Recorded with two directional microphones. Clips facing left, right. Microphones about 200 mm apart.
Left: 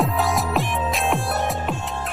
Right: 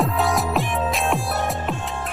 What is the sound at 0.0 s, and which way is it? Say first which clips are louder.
Music: right 1 dB; centre (ahead or behind).